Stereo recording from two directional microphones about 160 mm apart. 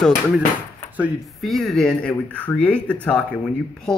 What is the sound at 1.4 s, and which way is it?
Speech, centre (ahead or behind).